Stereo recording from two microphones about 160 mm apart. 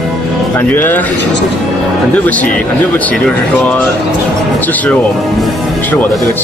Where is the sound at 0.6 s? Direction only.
10° left (ahead or behind).